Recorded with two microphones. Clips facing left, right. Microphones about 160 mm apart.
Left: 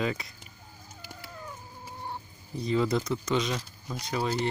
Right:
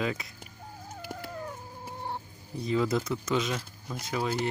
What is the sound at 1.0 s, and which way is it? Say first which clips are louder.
Chicken: right 6 dB; 60° right (ahead or behind).